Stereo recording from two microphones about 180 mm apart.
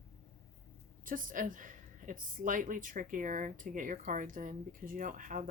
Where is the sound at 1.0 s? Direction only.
50° right (ahead or behind).